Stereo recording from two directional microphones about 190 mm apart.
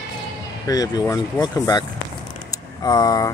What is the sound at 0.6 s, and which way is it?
A man's voice, 20° left (ahead or behind).